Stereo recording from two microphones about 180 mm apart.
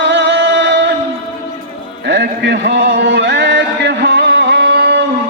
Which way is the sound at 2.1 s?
70° right (ahead or behind).